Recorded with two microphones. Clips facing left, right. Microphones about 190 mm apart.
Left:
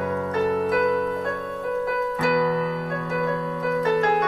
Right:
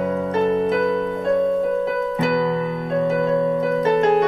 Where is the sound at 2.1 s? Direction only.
25° right (ahead or behind).